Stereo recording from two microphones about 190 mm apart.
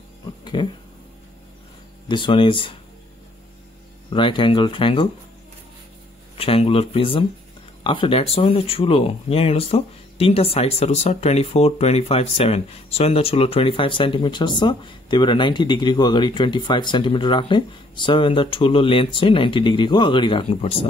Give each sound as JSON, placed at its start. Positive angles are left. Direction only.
{"t": 0.6, "sound": "speech", "side_deg": 25}
{"t": 2.0, "sound": "speech", "side_deg": 25}
{"t": 4.1, "sound": "speech", "side_deg": 25}
{"t": 6.3, "sound": "speech", "side_deg": 30}